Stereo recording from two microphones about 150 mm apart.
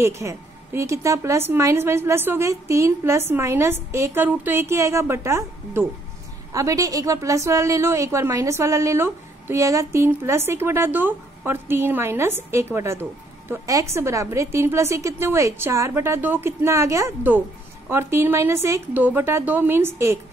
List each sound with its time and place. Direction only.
0.0 s a woman's voice: 20° right (ahead or behind)